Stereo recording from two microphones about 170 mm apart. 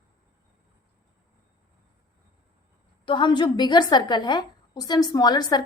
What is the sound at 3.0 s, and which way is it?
A woman's voice, 30° left (ahead or behind).